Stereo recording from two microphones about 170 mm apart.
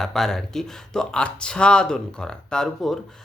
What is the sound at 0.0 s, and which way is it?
Speech, centre (ahead or behind).